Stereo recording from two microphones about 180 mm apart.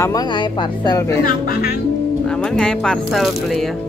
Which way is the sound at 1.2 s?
55° left (ahead or behind).